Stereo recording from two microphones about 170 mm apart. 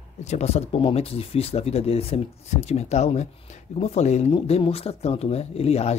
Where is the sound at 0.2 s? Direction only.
40° left (ahead or behind).